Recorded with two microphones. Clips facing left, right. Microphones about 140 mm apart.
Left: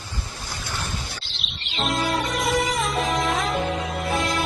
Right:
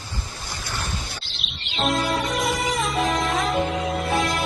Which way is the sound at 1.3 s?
Centre (ahead or behind).